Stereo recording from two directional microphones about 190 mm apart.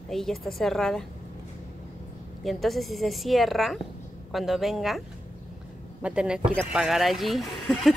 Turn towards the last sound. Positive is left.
turn(degrees=0)  # may be behind; listen again after turning